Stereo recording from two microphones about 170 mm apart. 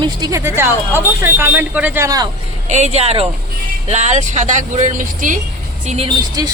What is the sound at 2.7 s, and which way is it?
Speech, 40° right (ahead or behind).